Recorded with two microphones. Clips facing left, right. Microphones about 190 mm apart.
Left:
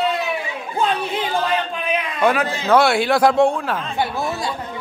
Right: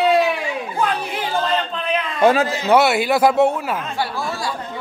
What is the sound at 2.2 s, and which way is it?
Speech, 25° right (ahead or behind).